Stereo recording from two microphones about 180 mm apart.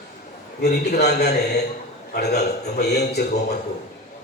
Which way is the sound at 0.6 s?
65° left (ahead or behind).